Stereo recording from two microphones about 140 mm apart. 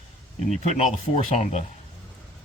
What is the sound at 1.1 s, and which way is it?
Speech, 50° left (ahead or behind).